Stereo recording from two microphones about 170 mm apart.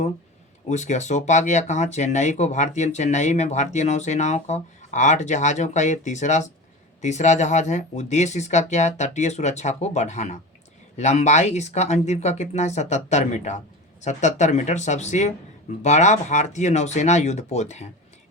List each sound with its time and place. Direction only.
0.7 s speech: 45° left (ahead or behind)